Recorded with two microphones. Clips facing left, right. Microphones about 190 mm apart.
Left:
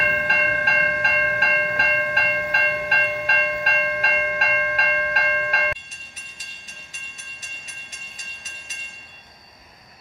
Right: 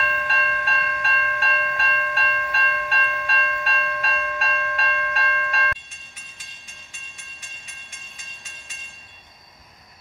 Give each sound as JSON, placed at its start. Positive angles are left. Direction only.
{"t": 0.0, "sound": "train", "side_deg": 55}